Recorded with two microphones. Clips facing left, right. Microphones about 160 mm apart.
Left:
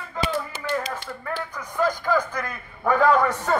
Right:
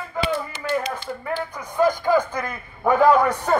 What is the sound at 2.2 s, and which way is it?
Speech, 25° right (ahead or behind).